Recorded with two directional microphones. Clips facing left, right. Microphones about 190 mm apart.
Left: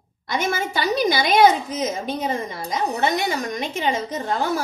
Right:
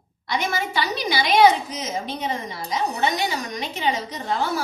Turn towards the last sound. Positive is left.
turn(degrees=50)  # may be behind; listen again after turning